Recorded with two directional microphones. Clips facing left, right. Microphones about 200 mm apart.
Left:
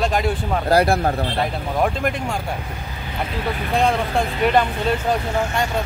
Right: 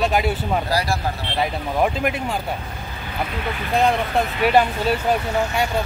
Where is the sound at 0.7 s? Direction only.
55° left (ahead or behind).